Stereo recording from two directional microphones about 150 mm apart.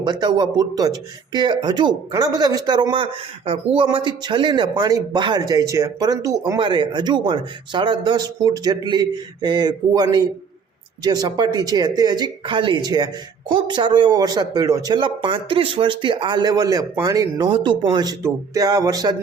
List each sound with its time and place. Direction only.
0.0 s speech: 30° right (ahead or behind)